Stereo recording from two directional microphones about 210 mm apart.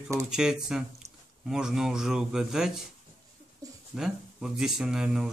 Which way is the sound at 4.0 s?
5° right (ahead or behind).